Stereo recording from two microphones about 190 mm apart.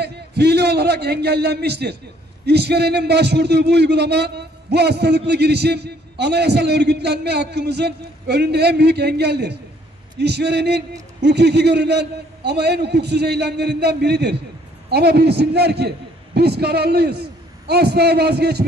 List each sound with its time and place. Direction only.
0.0 s a man's voice: 60° right (ahead or behind)